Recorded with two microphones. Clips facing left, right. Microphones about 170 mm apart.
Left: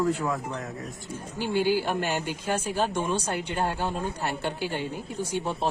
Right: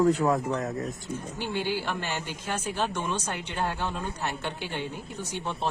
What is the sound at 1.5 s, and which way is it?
A woman's voice, 45° left (ahead or behind).